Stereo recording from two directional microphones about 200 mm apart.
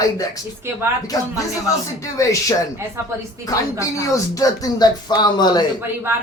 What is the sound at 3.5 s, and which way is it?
Speech, 15° left (ahead or behind).